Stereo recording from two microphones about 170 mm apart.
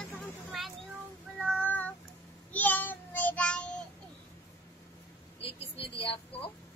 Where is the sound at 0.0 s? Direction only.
10° left (ahead or behind).